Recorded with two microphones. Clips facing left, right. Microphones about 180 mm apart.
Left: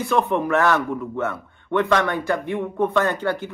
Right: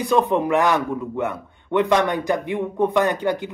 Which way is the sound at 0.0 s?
15° right (ahead or behind).